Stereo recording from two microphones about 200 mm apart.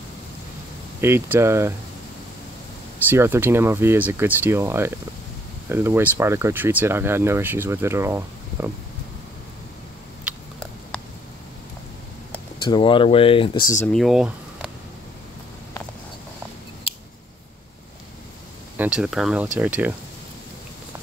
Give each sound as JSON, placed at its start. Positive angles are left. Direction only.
{"t": 1.0, "sound": "speech", "side_deg": -10}
{"t": 3.1, "sound": "speech", "side_deg": -10}
{"t": 10.3, "sound": "a sound", "side_deg": -5}
{"t": 12.6, "sound": "speech", "side_deg": 25}
{"t": 13.8, "sound": "speech", "side_deg": 0}
{"t": 18.8, "sound": "speech", "side_deg": -5}